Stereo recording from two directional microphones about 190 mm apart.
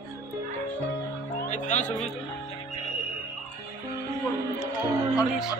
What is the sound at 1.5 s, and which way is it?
Speech, 40° left (ahead or behind).